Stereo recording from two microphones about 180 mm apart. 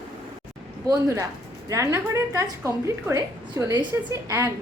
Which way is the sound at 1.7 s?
15° right (ahead or behind).